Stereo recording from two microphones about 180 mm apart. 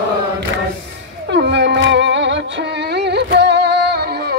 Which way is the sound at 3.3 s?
65° right (ahead or behind).